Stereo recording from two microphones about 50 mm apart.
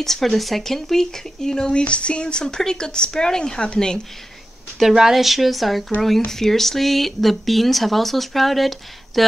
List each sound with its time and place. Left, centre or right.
0.0 s speech: centre
4.7 s speech: centre